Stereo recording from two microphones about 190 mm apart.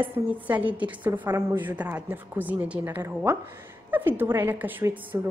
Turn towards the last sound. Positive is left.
turn(degrees=-10)  # may be behind; listen again after turning